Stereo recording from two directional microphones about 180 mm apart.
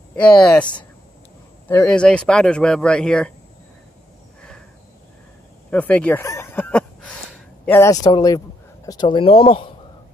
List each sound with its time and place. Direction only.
0.1 s speech: 5° left (ahead or behind)
5.7 s a sound: 10° left (ahead or behind)
7.6 s speech: 15° left (ahead or behind); by 9.7 s 30° left (ahead or behind)